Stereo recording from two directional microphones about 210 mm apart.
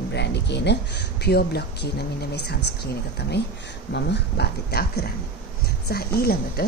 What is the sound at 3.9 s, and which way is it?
Speech, 50° left (ahead or behind).